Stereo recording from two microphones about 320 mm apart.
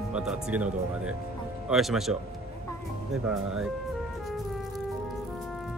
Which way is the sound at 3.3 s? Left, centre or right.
Centre.